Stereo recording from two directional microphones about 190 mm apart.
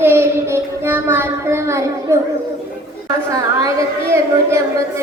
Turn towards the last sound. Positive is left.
turn(degrees=-15)  # may be behind; listen again after turning